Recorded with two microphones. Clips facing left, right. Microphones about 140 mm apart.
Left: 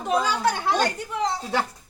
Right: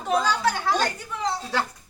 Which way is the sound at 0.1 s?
10° left (ahead or behind).